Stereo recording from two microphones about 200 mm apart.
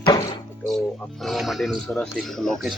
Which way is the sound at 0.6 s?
Centre (ahead or behind).